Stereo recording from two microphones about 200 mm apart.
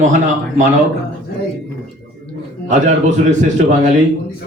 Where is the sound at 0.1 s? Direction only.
40° right (ahead or behind).